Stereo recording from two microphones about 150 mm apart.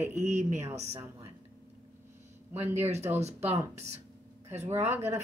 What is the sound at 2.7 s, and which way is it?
Speech, 45° right (ahead or behind).